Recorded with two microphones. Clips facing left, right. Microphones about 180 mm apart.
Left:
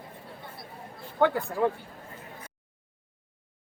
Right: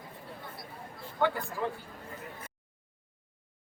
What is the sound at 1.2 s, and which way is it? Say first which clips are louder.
Speech: left 6 dB; 55° left (ahead or behind).